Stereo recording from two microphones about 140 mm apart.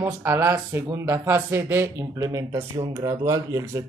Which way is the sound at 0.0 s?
15° right (ahead or behind).